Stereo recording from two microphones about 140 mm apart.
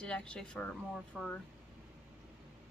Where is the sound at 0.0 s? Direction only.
5° left (ahead or behind).